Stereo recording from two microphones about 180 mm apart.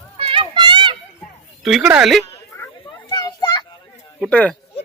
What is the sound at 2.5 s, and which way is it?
Children playing, 10° left (ahead or behind).